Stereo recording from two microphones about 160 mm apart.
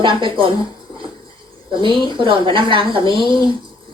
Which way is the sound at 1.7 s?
30° right (ahead or behind).